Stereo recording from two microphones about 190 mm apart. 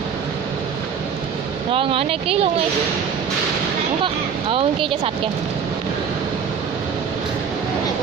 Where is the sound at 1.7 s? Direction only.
30° right (ahead or behind).